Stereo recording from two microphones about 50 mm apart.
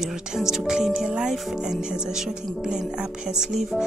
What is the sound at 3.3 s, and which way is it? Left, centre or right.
Speech, centre.